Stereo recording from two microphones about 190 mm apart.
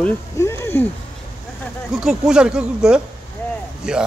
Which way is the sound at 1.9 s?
5° right (ahead or behind).